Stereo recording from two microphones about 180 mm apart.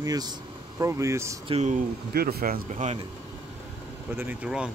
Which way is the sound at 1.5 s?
40° right (ahead or behind).